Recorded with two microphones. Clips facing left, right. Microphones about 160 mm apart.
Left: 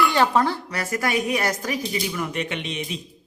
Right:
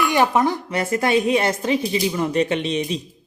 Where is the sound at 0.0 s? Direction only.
20° right (ahead or behind).